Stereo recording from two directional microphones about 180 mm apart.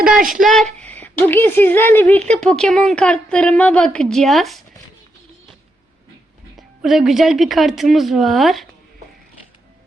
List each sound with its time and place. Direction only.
0.0 s a woman's voice: centre (ahead or behind)
6.6 s a woman's voice: centre (ahead or behind)